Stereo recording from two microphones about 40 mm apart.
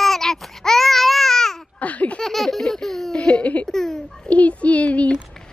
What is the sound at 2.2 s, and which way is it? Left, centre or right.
Baby laughter, centre.